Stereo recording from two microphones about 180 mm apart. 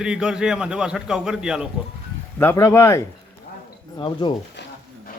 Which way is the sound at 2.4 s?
15° left (ahead or behind).